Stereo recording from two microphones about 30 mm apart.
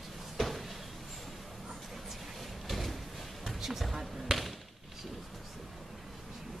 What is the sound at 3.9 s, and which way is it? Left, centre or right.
Basketball bounce, centre.